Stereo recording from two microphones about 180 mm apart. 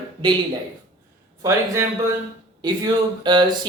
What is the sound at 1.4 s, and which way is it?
A man's voice, 15° right (ahead or behind).